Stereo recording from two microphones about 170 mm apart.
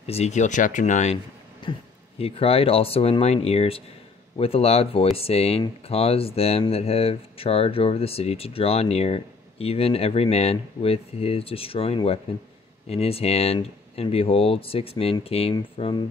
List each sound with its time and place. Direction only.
0.0 s speech: 40° left (ahead or behind)
1.6 s speech: 30° left (ahead or behind)